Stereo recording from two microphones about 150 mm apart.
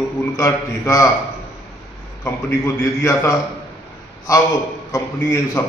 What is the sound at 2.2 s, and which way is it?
A man's voice, 20° left (ahead or behind).